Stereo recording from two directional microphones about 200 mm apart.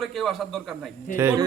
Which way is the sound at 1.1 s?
10° right (ahead or behind).